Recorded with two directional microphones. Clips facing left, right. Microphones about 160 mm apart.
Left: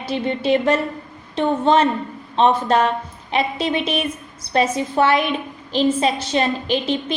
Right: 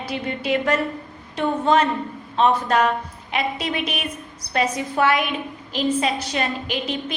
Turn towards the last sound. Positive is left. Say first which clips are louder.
# left 5 dB
turn(degrees=30)  # may be behind; listen again after turning